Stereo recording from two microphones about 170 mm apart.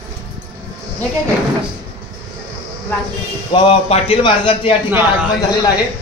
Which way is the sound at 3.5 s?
35° left (ahead or behind).